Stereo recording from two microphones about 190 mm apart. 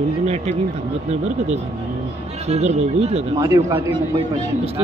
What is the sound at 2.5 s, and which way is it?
Speech, 35° right (ahead or behind).